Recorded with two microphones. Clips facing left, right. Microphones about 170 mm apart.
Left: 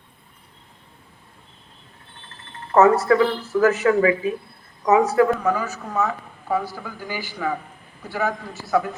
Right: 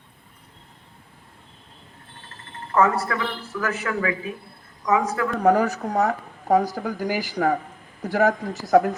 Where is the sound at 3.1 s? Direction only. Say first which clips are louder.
Left 10 dB; 40° left (ahead or behind).